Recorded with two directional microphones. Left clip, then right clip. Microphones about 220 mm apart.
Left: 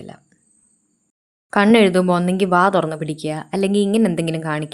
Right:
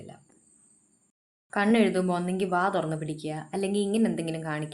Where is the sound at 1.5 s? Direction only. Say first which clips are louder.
Left 10 dB; 40° left (ahead or behind).